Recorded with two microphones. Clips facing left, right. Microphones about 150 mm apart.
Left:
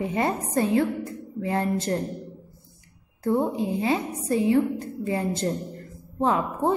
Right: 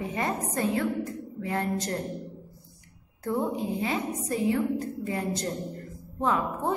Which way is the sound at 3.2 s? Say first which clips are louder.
Left 5 dB; 30° left (ahead or behind).